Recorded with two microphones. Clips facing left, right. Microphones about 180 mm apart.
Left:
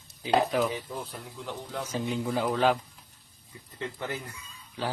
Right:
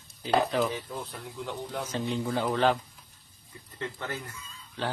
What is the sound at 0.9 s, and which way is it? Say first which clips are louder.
Speech: right 1 dB; centre (ahead or behind).